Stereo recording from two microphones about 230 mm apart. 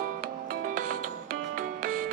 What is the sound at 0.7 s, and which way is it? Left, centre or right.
Music, right.